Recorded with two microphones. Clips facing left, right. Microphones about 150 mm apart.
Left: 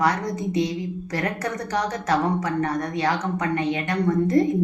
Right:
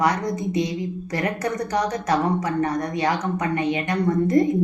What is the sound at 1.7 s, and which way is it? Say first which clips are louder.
A woman's voice: even; 15° right (ahead or behind).